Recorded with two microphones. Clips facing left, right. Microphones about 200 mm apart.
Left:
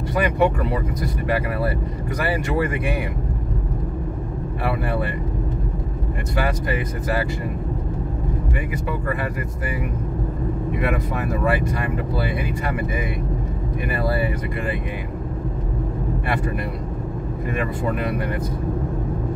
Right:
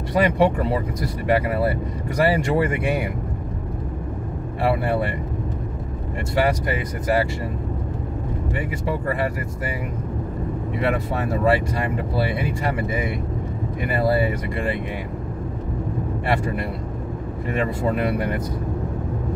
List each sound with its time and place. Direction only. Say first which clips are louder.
0.2 s speech: right 1 dB; 25° right (ahead or behind)
4.6 s speech: right 3 dB; 25° right (ahead or behind)
6.3 s speech: right 3 dB; 25° right (ahead or behind)
8.5 s speech: right 1 dB; 25° right (ahead or behind)
10.8 s speech: right 3 dB; 30° right (ahead or behind)
17.6 s speech: right 3 dB; 25° right (ahead or behind)